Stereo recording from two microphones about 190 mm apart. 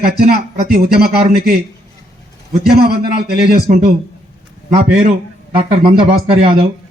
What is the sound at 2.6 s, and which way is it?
A man's voice, 55° right (ahead or behind).